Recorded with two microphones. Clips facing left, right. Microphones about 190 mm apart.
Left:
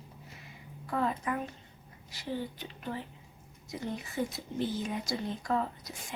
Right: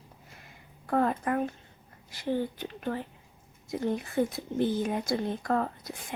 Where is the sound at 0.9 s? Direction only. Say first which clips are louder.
Right 5 dB; 50° right (ahead or behind).